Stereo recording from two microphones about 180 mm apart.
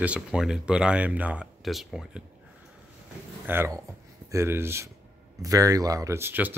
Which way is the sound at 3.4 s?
15° right (ahead or behind).